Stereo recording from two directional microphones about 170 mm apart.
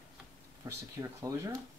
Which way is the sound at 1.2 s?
20° right (ahead or behind).